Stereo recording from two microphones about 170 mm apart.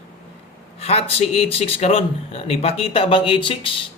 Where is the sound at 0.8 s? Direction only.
35° left (ahead or behind).